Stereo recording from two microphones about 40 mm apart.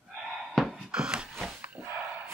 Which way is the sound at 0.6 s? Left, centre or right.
Centre.